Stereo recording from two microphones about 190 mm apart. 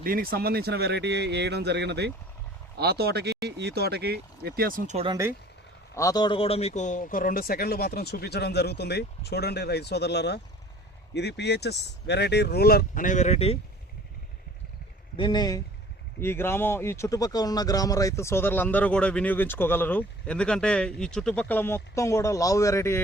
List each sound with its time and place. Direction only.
0.0 s speech: 50° right (ahead or behind)
5.9 s a man's voice: 15° left (ahead or behind); by 13.6 s 35° left (ahead or behind)
15.1 s speech: 25° left (ahead or behind)